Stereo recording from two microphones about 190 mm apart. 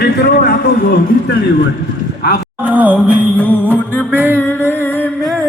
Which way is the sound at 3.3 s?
10° left (ahead or behind).